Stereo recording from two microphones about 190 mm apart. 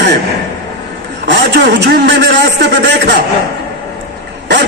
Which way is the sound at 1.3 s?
60° right (ahead or behind).